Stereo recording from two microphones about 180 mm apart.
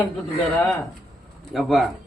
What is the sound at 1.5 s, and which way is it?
Speech, centre (ahead or behind).